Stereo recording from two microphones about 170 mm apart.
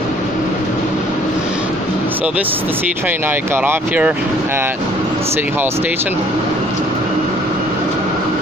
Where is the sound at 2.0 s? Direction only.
10° right (ahead or behind).